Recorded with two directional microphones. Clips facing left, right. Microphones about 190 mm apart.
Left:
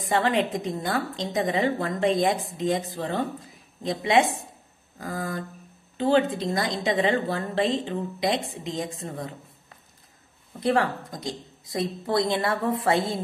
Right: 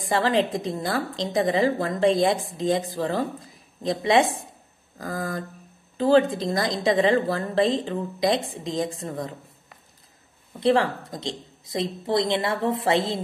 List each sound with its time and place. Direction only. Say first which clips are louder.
0.1 s a woman's voice: right 1 dB; 35° right (ahead or behind)
10.6 s speech: right 3 dB; 30° right (ahead or behind)